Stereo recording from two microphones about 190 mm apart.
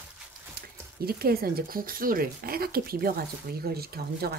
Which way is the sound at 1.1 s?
55° right (ahead or behind).